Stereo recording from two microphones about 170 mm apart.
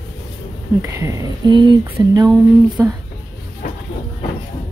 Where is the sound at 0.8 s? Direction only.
15° right (ahead or behind).